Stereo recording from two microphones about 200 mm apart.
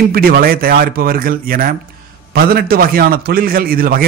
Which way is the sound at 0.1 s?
50° right (ahead or behind).